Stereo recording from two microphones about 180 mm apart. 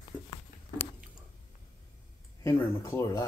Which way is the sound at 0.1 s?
5° right (ahead or behind).